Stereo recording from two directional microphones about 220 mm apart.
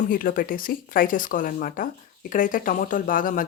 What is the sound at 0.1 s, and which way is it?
Speech, 40° left (ahead or behind).